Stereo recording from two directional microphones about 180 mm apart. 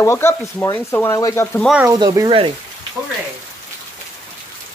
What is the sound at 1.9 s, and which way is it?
Speech, 20° right (ahead or behind).